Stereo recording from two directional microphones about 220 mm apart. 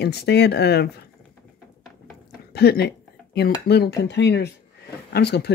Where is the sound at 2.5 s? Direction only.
45° left (ahead or behind).